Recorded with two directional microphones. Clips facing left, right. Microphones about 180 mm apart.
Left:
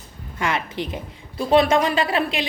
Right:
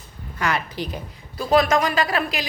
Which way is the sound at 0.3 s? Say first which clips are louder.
Even; 25° left (ahead or behind).